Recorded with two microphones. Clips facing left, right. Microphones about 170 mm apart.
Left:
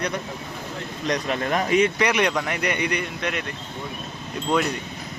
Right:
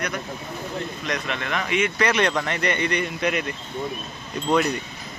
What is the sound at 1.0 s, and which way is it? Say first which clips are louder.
Speech: left 8 dB; 35° left (ahead or behind).